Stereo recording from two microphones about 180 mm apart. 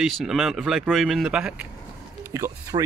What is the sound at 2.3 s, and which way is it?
Speech, 15° right (ahead or behind).